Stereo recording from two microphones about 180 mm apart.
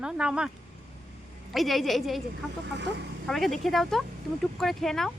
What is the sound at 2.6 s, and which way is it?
Speech, 70° right (ahead or behind).